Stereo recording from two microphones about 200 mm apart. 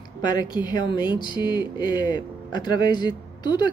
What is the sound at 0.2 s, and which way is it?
Speech, 20° left (ahead or behind).